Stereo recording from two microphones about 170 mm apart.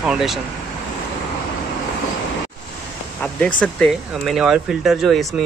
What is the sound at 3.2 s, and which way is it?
Speech, 5° left (ahead or behind).